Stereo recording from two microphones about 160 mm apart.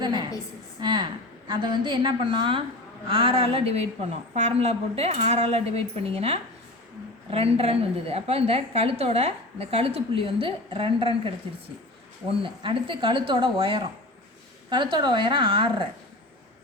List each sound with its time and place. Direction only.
0.0 s a woman's voice: 30° right (ahead or behind)
12.4 s a woman's voice: 30° right (ahead or behind)